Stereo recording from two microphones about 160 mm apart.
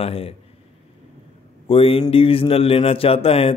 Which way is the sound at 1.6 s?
35° left (ahead or behind).